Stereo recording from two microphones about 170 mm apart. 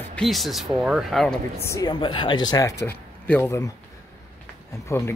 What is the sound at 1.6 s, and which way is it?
Speech, 20° left (ahead or behind).